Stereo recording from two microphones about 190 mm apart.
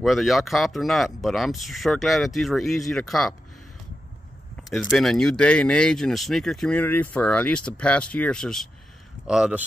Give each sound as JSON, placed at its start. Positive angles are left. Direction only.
{"t": 0.0, "sound": "speech", "side_deg": 0}
{"t": 4.6, "sound": "speech", "side_deg": 0}